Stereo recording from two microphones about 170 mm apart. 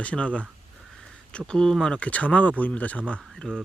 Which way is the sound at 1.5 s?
5° left (ahead or behind).